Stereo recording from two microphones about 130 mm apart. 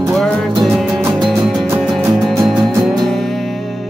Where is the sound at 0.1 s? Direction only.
5° left (ahead or behind).